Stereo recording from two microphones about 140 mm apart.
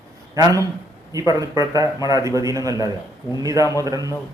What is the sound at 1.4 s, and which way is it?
A man's voice, 25° right (ahead or behind).